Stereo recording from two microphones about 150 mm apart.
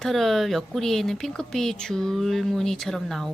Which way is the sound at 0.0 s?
Centre (ahead or behind).